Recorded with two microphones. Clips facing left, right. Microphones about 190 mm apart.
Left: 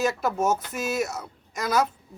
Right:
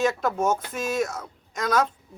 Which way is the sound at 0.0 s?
5° left (ahead or behind).